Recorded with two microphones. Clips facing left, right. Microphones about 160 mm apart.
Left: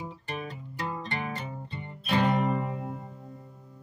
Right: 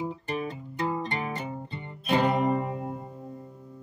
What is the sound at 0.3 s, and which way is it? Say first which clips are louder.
Music: right 5 dB; 20° right (ahead or behind).